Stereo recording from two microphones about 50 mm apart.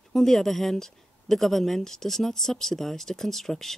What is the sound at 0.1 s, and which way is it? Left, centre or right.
Speech, centre.